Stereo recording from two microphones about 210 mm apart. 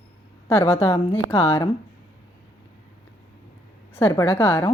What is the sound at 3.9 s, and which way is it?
Speech, 10° left (ahead or behind).